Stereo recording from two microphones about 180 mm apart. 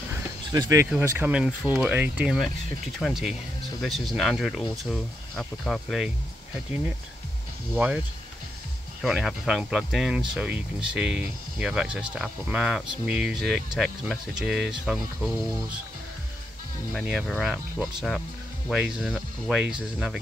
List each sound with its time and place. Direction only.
0.5 s speech: 20° right (ahead or behind); by 6.1 s centre (ahead or behind)
7.7 s speech: 10° right (ahead or behind)
9.0 s speech: centre (ahead or behind)
17.3 s speech: centre (ahead or behind)